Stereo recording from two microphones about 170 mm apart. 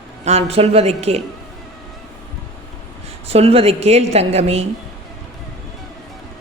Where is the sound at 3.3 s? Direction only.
35° right (ahead or behind).